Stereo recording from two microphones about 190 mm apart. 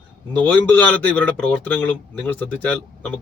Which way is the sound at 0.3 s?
10° left (ahead or behind).